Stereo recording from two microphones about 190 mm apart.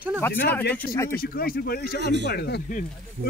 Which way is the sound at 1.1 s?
50° left (ahead or behind).